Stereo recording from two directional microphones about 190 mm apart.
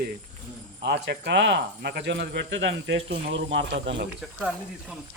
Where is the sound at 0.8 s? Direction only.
60° right (ahead or behind).